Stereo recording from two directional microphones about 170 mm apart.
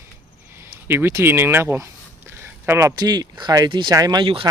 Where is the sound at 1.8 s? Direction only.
15° right (ahead or behind).